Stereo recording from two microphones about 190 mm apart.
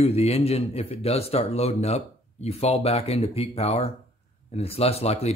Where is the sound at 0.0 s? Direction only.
35° left (ahead or behind).